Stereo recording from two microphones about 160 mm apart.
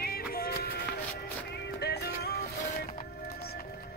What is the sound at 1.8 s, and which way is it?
Music, 90° left.